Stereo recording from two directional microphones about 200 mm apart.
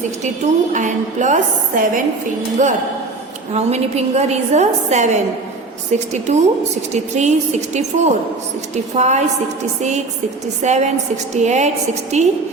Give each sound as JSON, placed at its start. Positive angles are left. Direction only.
{"t": 0.2, "sound": "a woman's voice", "side_deg": -35}
{"t": 10.6, "sound": "a woman's voice", "side_deg": -35}